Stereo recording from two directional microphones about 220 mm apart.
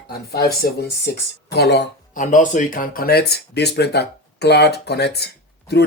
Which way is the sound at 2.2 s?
35° left (ahead or behind).